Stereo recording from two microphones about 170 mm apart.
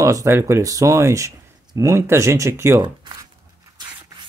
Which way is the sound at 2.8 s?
25° right (ahead or behind).